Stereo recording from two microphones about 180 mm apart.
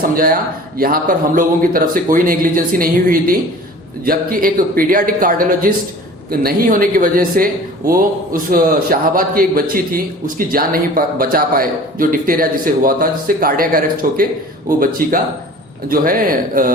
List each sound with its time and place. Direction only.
0.8 s a man's voice: 50° right (ahead or behind)